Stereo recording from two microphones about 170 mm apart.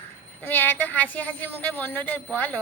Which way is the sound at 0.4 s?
10° left (ahead or behind).